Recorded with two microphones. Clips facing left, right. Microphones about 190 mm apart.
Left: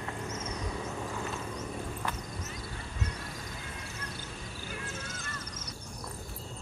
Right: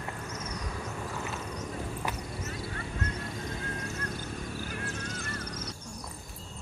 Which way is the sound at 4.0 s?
45° right (ahead or behind).